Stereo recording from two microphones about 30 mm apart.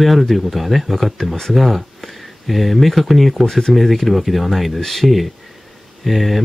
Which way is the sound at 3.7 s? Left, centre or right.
Centre.